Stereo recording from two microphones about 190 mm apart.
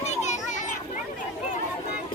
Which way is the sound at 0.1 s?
35° left (ahead or behind).